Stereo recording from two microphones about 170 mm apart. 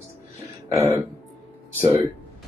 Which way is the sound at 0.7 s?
15° right (ahead or behind).